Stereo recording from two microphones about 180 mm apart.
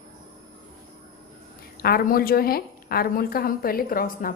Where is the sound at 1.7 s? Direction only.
55° left (ahead or behind).